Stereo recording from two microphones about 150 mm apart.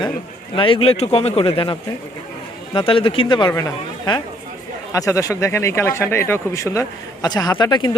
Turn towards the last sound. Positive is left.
turn(degrees=30)  # may be behind; listen again after turning